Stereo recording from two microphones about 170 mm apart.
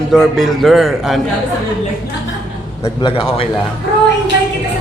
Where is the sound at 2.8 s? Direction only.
25° left (ahead or behind).